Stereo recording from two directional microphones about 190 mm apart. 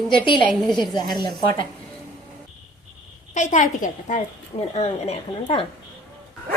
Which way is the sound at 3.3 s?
40° left (ahead or behind).